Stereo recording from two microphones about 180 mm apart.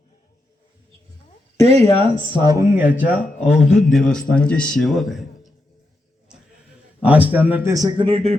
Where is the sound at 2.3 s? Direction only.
20° right (ahead or behind); by 5.5 s centre (ahead or behind).